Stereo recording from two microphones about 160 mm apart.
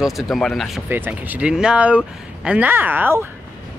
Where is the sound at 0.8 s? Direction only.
15° right (ahead or behind).